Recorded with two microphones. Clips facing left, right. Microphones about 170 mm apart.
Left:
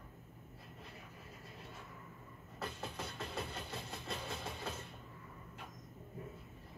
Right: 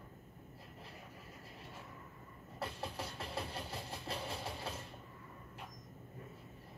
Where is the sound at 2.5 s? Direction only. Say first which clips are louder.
Right 1 dB; 30° right (ahead or behind).